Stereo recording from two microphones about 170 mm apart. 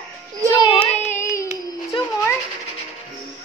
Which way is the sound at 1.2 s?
20° left (ahead or behind).